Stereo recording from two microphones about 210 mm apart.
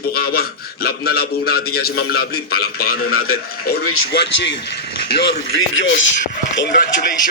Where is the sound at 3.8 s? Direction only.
90° left.